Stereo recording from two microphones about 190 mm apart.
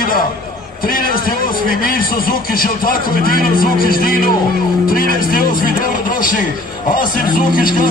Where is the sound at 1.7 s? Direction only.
50° left (ahead or behind).